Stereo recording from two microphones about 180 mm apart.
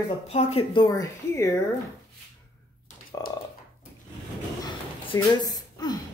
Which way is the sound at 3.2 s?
20° left (ahead or behind).